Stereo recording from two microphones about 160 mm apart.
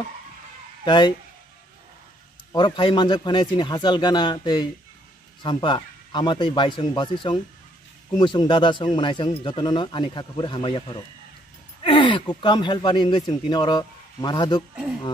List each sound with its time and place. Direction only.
0.8 s speech: 30° left (ahead or behind)
2.5 s speech: 30° left (ahead or behind)